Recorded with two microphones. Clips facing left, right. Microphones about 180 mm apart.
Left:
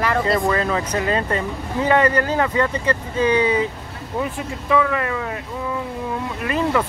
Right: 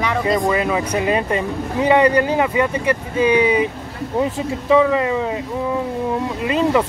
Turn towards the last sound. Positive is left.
turn(degrees=-20)  # may be behind; listen again after turning